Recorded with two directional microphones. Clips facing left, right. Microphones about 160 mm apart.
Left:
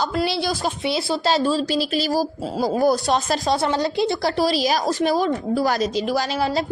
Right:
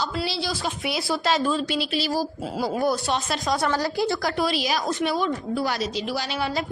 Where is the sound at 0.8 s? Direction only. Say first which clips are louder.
Left 3 dB; 30° left (ahead or behind).